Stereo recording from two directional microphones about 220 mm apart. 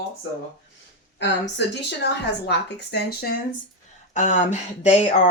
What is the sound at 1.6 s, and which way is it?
A woman's voice, 50° left (ahead or behind).